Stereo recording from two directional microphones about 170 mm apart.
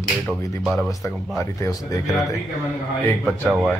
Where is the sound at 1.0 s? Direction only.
15° left (ahead or behind).